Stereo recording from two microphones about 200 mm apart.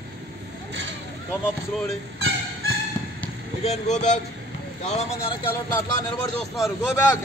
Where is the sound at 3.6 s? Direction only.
35° left (ahead or behind).